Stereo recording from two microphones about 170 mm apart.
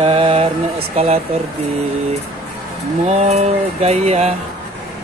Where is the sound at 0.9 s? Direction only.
35° right (ahead or behind).